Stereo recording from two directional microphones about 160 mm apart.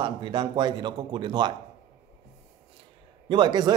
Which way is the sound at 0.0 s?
30° right (ahead or behind).